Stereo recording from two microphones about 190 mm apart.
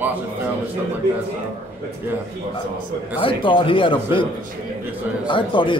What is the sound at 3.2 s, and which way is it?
A man's voice, 25° left (ahead or behind).